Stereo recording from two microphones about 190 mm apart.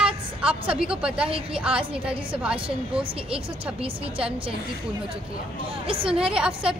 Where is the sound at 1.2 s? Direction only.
30° right (ahead or behind).